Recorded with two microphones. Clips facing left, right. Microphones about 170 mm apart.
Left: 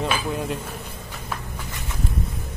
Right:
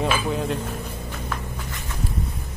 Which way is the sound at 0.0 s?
Centre (ahead or behind).